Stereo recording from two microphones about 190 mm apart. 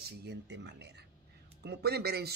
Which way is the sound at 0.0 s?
60° right (ahead or behind).